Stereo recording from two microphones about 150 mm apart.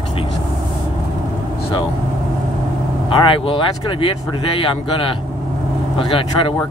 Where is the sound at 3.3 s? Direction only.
35° left (ahead or behind).